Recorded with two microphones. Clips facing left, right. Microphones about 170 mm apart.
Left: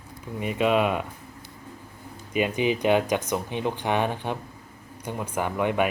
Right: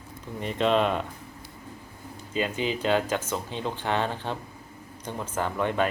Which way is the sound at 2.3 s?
15° left (ahead or behind).